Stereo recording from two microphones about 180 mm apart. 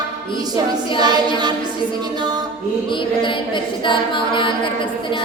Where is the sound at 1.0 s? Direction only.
25° right (ahead or behind).